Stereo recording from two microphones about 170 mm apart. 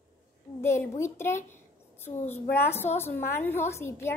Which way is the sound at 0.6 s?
15° left (ahead or behind).